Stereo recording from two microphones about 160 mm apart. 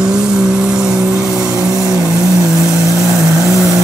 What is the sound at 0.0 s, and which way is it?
Vehicle, 5° right (ahead or behind).